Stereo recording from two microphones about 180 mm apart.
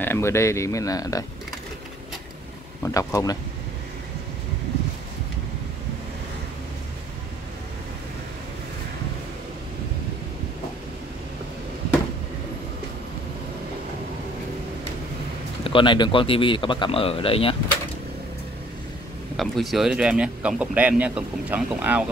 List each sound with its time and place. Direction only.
0.0 s speech: 15° left (ahead or behind)
2.8 s speech: 15° left (ahead or behind)
15.6 s a man's voice: 30° left (ahead or behind)
19.3 s speech: centre (ahead or behind)